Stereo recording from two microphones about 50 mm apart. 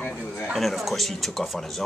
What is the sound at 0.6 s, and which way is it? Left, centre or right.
Speech, centre.